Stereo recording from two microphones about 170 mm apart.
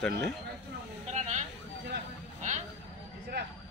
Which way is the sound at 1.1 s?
45° right (ahead or behind).